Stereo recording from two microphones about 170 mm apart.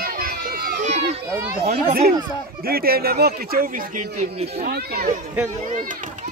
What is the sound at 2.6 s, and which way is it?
Speech, 60° right (ahead or behind).